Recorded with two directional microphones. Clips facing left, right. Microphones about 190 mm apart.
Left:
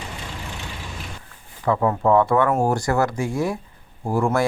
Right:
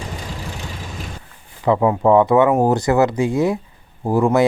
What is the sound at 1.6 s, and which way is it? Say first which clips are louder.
Speech: right 4 dB; 15° right (ahead or behind).